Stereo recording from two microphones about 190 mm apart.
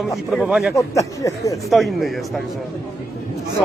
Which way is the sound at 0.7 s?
15° left (ahead or behind).